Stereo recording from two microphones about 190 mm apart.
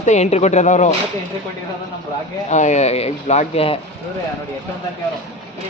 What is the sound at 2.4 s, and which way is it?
A man's voice, 40° left (ahead or behind).